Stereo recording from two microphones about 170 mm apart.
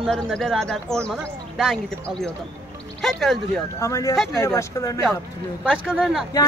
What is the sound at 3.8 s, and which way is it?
Speech, 20° left (ahead or behind).